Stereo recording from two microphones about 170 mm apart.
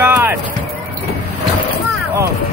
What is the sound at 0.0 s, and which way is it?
Music, 10° right (ahead or behind).